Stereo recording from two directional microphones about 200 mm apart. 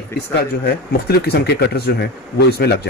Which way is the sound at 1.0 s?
55° left (ahead or behind).